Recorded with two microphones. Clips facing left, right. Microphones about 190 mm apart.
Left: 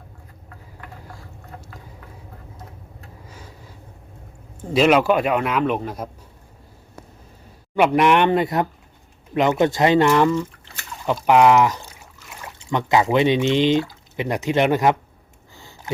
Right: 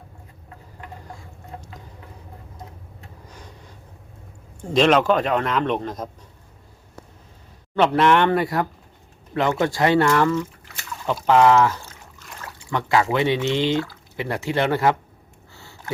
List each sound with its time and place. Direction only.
3.2 s a sound: 5° left (ahead or behind)
4.6 s a man's voice: 5° left (ahead or behind)
7.8 s a man's voice: 15° left (ahead or behind)